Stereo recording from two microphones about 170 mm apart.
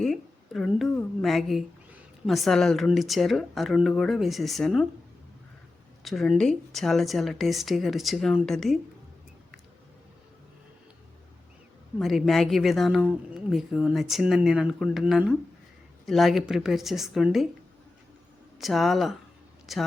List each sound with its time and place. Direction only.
0.0 s a woman's voice: centre (ahead or behind)
6.1 s speech: centre (ahead or behind)
11.9 s speech: centre (ahead or behind)
18.6 s speech: centre (ahead or behind)